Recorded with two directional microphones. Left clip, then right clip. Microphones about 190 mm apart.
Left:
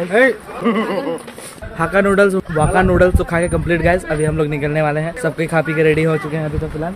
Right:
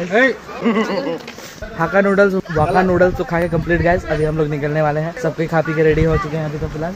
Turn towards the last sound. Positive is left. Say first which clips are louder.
# even
turn(degrees=10)  # may be behind; listen again after turning